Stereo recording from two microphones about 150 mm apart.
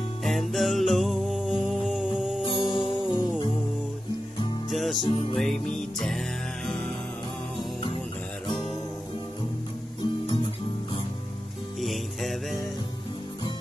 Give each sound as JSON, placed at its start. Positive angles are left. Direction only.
{"t": 0.2, "sound": "music", "side_deg": 0}
{"t": 2.4, "sound": "music", "side_deg": 35}
{"t": 4.6, "sound": "music", "side_deg": 0}
{"t": 5.0, "sound": "music", "side_deg": 40}
{"t": 5.4, "sound": "music", "side_deg": 5}
{"t": 10.2, "sound": "music", "side_deg": 35}
{"t": 11.8, "sound": "music", "side_deg": 0}